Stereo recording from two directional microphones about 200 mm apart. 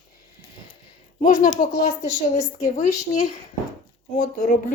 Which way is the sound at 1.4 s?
35° left (ahead or behind).